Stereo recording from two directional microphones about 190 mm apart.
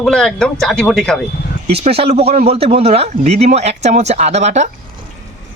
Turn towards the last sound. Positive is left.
turn(degrees=-35)  # may be behind; listen again after turning